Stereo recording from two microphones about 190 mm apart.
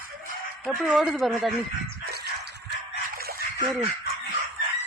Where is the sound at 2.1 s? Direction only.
60° right (ahead or behind).